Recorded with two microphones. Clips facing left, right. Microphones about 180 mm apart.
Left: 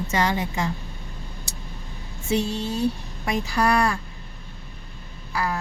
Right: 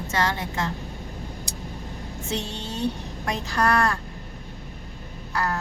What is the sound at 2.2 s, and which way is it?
Speech, 10° left (ahead or behind).